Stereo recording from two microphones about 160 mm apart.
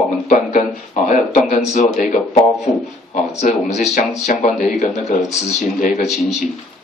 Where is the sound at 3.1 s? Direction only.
50° left (ahead or behind).